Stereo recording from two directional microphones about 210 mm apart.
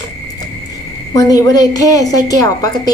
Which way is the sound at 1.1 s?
15° left (ahead or behind).